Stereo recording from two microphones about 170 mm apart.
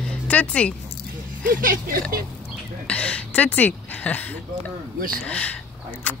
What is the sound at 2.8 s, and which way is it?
Speech, 5° left (ahead or behind).